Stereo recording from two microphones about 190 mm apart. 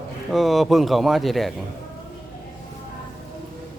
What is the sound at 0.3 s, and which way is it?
Speech, centre (ahead or behind).